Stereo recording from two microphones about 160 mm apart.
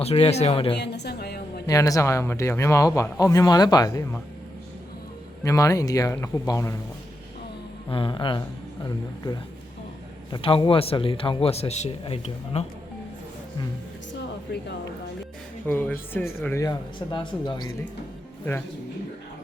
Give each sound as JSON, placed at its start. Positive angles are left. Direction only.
{"t": 0.0, "sound": "speech", "side_deg": 40}
{"t": 0.8, "sound": "a sound", "side_deg": 90}
{"t": 1.6, "sound": "speech", "side_deg": 20}
{"t": 5.4, "sound": "speech", "side_deg": 20}
{"t": 7.9, "sound": "speech", "side_deg": 30}
{"t": 14.5, "sound": "speech", "side_deg": 90}
{"t": 15.6, "sound": "speech", "side_deg": 10}
{"t": 16.6, "sound": "speech", "side_deg": 25}